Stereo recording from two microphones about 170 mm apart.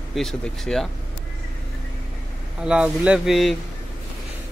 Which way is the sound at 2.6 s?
5° right (ahead or behind).